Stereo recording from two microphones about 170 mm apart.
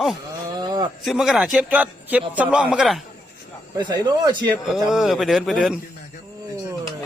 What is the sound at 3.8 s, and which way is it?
Speech, 25° right (ahead or behind).